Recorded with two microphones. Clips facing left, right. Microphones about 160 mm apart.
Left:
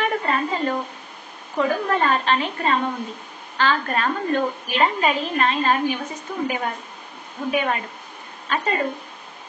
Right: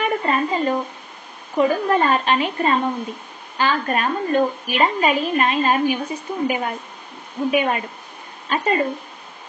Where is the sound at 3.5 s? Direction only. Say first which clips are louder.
Right 1 dB; 15° right (ahead or behind).